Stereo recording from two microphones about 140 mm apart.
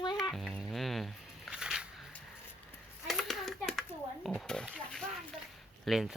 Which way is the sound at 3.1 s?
Centre (ahead or behind).